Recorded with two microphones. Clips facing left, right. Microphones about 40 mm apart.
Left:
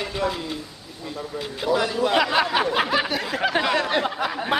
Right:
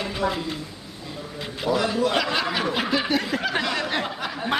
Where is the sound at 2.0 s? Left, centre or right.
Centre.